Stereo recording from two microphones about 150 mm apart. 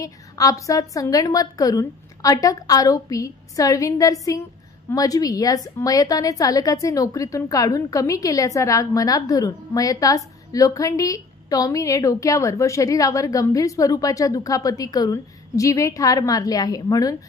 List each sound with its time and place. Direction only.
0.0 s a woman's voice: 25° left (ahead or behind)